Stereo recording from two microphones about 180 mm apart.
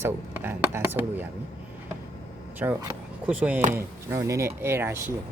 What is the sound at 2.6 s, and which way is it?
Speech, 10° right (ahead or behind).